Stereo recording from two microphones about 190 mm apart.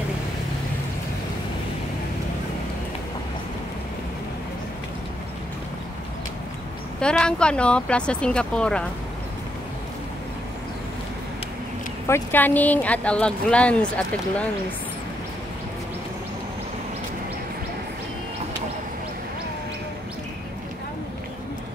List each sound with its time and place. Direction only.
7.0 s speech: 5° left (ahead or behind)
12.1 s speech: 10° left (ahead or behind)